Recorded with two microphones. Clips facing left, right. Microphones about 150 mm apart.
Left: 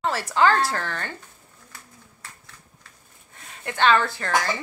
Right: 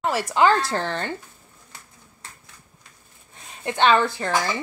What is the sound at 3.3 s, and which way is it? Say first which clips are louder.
Speech: right 3 dB; 20° right (ahead or behind).